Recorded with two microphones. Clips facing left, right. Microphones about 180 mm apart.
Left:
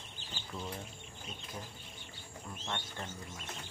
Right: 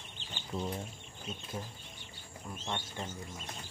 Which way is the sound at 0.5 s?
35° right (ahead or behind).